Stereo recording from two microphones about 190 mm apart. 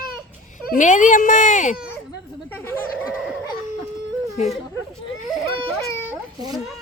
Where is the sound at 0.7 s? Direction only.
40° left (ahead or behind).